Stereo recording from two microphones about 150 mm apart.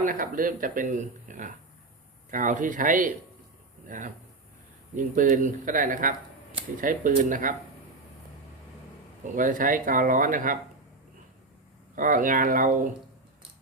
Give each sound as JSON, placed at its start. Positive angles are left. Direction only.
{"t": 0.0, "sound": "speech", "side_deg": -65}
{"t": 9.3, "sound": "speech", "side_deg": -60}
{"t": 11.9, "sound": "speech", "side_deg": -65}